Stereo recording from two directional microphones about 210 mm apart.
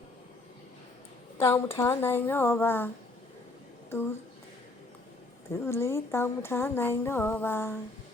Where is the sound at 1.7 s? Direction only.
10° left (ahead or behind).